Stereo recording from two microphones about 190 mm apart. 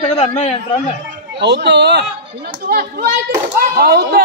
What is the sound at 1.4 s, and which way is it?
Speech, 65° right (ahead or behind).